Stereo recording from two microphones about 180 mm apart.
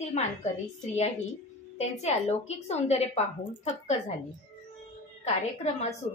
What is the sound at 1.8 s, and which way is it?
A woman's voice, 35° left (ahead or behind).